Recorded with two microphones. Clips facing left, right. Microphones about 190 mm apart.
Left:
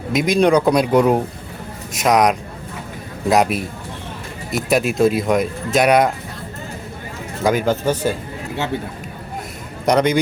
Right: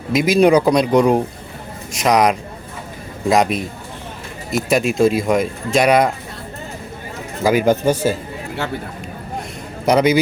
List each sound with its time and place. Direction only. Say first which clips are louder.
0.1 s speech: right 2 dB; centre (ahead or behind)
7.4 s speech: right 3 dB; 15° right (ahead or behind)
9.8 s speech: right 2 dB; 5° right (ahead or behind)